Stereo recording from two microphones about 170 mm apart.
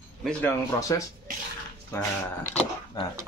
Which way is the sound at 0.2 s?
10° left (ahead or behind).